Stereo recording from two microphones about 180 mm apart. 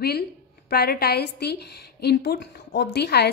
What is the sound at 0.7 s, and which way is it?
A woman's voice, 60° left (ahead or behind).